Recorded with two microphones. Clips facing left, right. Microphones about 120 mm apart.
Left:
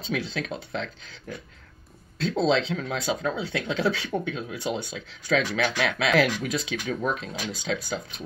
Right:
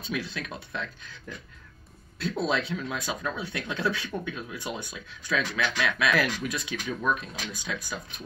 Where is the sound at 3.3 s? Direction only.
85° left.